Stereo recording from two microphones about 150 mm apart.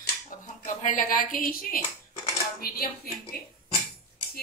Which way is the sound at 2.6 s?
90° left.